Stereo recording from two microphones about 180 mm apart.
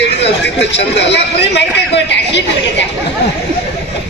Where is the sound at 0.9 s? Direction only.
70° left (ahead or behind).